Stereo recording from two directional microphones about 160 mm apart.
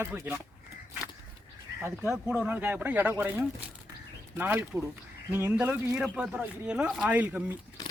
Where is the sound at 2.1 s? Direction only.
5° right (ahead or behind).